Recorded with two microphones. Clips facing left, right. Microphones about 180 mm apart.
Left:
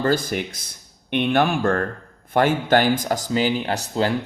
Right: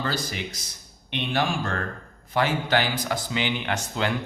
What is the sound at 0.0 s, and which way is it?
Speech, 50° left (ahead or behind).